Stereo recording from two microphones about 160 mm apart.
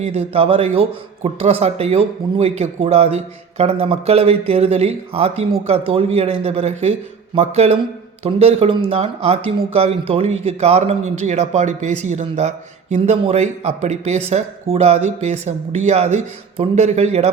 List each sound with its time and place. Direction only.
0.0 s a man's voice: 40° right (ahead or behind)